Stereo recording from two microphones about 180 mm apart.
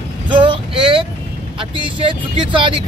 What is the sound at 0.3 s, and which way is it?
Vehicle, 25° right (ahead or behind).